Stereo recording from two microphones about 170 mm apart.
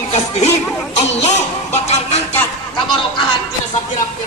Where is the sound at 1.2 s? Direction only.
40° left (ahead or behind).